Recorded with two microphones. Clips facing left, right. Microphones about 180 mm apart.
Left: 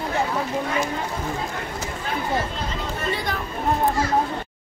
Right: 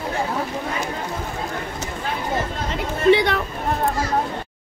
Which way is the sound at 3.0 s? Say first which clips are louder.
Right 13 dB; 70° right (ahead or behind).